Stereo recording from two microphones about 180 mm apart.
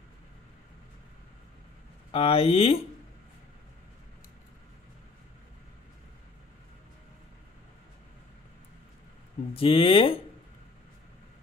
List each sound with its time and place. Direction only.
2.1 s speech: 35° left (ahead or behind)
9.5 s speech: 30° left (ahead or behind)